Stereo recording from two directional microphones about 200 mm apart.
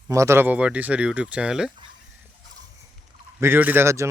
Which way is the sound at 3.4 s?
10° right (ahead or behind).